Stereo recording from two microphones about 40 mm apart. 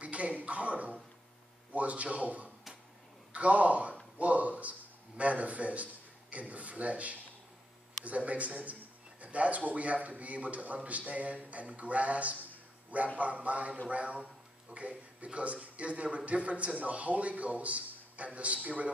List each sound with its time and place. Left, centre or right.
0.0 s speech: right
8.3 s a man's voice: right